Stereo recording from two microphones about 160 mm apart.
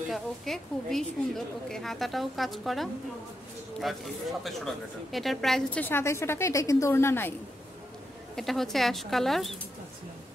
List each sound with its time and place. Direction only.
0.1 s a woman's voice: centre (ahead or behind)
5.9 s a woman's voice: 15° left (ahead or behind)
8.4 s a woman's voice: centre (ahead or behind)